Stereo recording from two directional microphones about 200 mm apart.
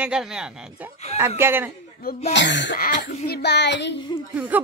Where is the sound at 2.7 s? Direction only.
40° left (ahead or behind).